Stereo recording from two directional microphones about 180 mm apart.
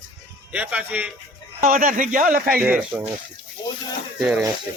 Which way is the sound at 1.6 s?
50° right (ahead or behind).